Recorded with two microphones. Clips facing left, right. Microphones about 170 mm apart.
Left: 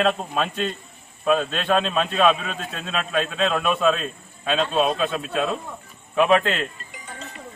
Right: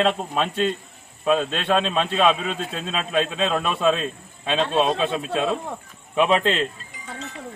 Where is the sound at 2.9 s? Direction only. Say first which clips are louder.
Right 1 dB; 30° right (ahead or behind).